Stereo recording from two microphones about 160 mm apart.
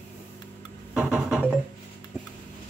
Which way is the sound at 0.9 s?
5° right (ahead or behind).